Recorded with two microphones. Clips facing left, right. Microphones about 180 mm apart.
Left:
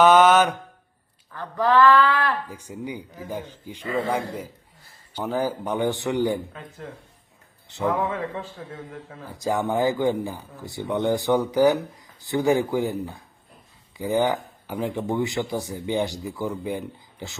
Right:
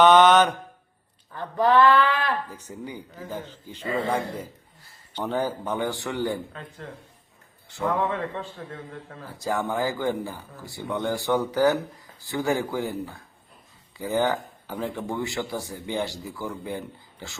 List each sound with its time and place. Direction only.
0.0 s mantra: 5° left (ahead or behind)
1.3 s speech: 20° right (ahead or behind)
2.5 s speech: 10° left (ahead or behind)
8.1 s speech: 5° left (ahead or behind)
9.2 s speech: 15° left (ahead or behind)